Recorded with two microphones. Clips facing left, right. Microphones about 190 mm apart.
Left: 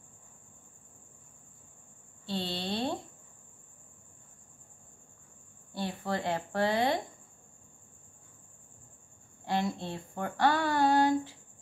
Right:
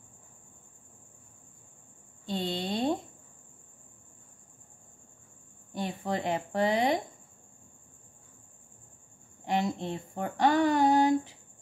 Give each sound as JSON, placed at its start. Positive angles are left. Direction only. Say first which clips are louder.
{"t": 2.2, "sound": "a sound", "louder": "right 3 dB", "side_deg": -15}
{"t": 5.7, "sound": "a woman's voice", "louder": "right 1 dB", "side_deg": -20}
{"t": 9.4, "sound": "speech", "louder": "right 2 dB", "side_deg": -20}